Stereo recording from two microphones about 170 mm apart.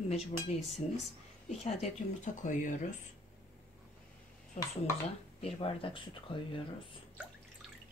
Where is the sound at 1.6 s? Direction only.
40° left (ahead or behind).